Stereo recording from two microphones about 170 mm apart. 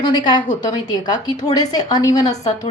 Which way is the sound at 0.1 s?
25° left (ahead or behind).